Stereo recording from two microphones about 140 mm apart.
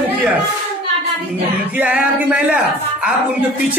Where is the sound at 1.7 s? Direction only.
10° right (ahead or behind).